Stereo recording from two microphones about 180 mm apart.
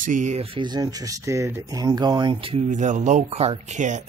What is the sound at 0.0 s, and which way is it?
Speech, 45° right (ahead or behind).